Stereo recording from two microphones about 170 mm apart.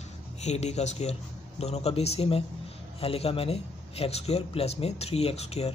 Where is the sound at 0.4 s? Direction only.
40° left (ahead or behind).